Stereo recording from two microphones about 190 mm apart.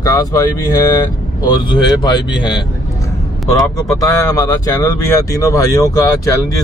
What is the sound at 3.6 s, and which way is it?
Speech, 15° left (ahead or behind).